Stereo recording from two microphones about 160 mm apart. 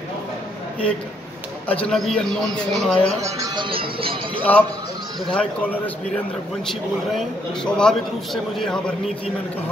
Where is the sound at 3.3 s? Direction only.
25° right (ahead or behind).